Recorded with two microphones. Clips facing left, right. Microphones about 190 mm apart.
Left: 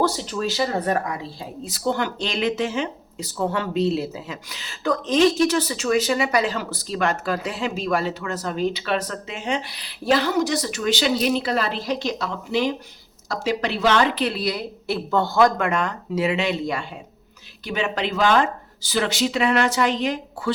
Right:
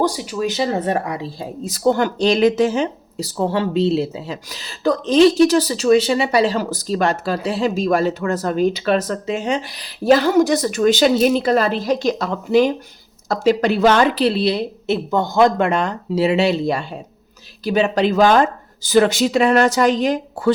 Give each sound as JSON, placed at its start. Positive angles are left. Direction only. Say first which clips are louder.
{"t": 0.0, "sound": "speech", "louder": "right 3 dB", "side_deg": -10}
{"t": 1.4, "sound": "a woman's voice", "louder": "right 6 dB", "side_deg": -45}
{"t": 14.3, "sound": "speech", "louder": "right 7 dB", "side_deg": -30}